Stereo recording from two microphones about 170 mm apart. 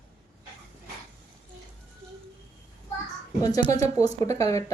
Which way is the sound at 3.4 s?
20° left (ahead or behind).